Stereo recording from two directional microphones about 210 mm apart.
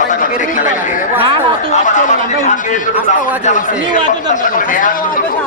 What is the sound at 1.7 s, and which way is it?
A man's voice, 35° left (ahead or behind).